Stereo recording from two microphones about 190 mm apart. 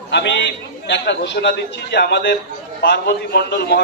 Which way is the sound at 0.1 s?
65° left (ahead or behind).